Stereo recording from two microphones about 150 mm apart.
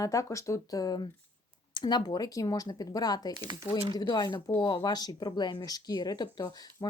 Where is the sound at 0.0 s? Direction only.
20° left (ahead or behind).